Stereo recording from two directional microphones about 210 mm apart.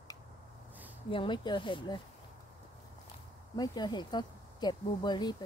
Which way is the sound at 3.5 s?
20° left (ahead or behind).